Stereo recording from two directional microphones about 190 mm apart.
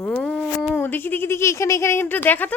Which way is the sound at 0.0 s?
5° left (ahead or behind).